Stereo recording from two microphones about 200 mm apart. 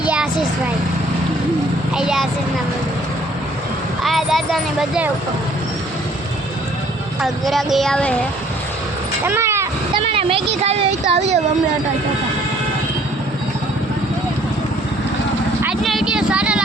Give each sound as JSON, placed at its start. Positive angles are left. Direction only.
{"t": 0.0, "sound": "vehicle", "side_deg": -5}
{"t": 2.0, "sound": "a child's voice", "side_deg": -5}
{"t": 4.0, "sound": "a child's voice", "side_deg": 0}
{"t": 7.2, "sound": "a child's voice", "side_deg": 0}
{"t": 9.2, "sound": "vehicle", "side_deg": -15}
{"t": 10.0, "sound": "speech", "side_deg": -30}
{"t": 15.6, "sound": "vehicle", "side_deg": 0}